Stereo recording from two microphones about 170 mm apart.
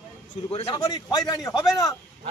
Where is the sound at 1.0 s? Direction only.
20° left (ahead or behind).